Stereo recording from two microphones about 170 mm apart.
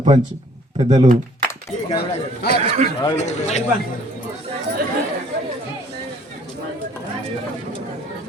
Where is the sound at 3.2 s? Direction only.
40° left (ahead or behind).